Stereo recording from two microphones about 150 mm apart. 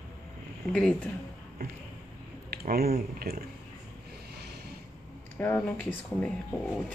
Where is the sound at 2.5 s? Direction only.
90° right.